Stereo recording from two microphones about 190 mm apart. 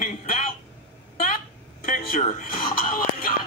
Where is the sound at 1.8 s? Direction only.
45° left (ahead or behind).